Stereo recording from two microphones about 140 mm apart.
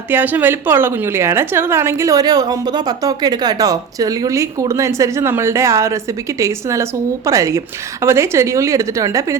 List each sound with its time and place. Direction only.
0.1 s a woman's voice: 15° right (ahead or behind)